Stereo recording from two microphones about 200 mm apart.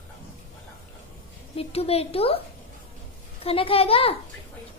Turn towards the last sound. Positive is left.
turn(degrees=30)  # may be behind; listen again after turning